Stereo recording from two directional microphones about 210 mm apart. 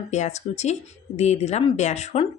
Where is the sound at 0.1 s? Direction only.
35° left (ahead or behind).